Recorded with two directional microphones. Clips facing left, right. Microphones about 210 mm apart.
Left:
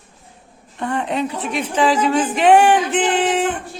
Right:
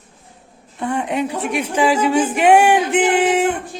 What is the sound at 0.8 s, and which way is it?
A man's voice, 10° right (ahead or behind).